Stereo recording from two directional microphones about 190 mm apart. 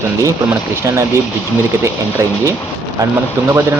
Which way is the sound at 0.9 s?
15° right (ahead or behind).